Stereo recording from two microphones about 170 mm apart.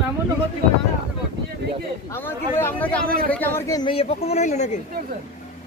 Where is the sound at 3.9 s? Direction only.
40° left (ahead or behind).